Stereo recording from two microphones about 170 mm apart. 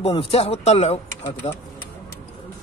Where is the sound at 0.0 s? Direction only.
35° left (ahead or behind).